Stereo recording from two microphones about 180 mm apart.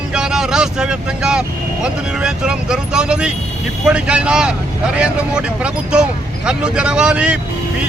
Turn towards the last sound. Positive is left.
turn(degrees=-5)  # may be behind; listen again after turning